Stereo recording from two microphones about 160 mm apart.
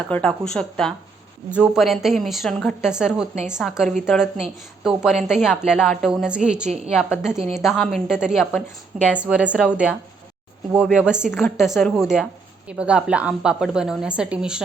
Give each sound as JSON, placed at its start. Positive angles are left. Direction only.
{"t": 0.1, "sound": "speech", "side_deg": 5}
{"t": 6.7, "sound": "a woman's voice", "side_deg": -40}
{"t": 6.9, "sound": "a woman's voice", "side_deg": -5}